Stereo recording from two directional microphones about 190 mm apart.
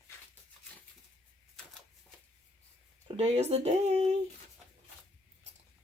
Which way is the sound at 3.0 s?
30° right (ahead or behind).